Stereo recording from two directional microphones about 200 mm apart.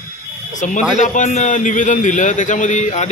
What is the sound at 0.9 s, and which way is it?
A man's voice, 40° left (ahead or behind).